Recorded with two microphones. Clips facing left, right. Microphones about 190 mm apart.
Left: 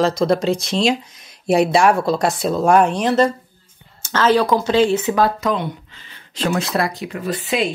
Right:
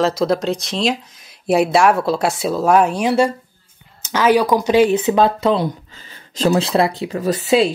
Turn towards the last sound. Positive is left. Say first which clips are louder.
# right 6 dB
turn(degrees=-35)  # may be behind; listen again after turning